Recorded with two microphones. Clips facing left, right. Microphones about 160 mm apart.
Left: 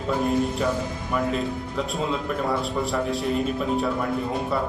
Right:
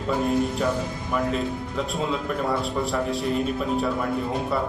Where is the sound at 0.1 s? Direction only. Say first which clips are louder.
Even; centre (ahead or behind).